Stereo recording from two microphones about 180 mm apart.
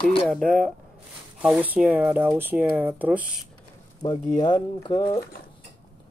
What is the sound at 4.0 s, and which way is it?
Speech, 25° left (ahead or behind).